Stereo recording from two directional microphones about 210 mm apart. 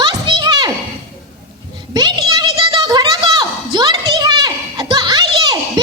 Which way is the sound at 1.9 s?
20° right (ahead or behind).